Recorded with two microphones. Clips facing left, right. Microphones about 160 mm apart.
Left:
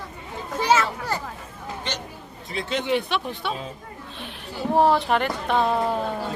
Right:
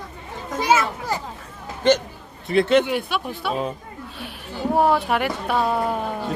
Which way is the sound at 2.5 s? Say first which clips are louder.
Right 11 dB; 65° right (ahead or behind).